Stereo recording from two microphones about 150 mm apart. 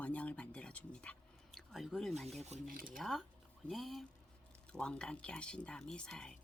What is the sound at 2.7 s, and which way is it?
Speech, 75° right (ahead or behind).